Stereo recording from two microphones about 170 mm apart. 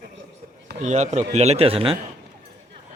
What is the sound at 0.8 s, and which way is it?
Speech, 45° right (ahead or behind).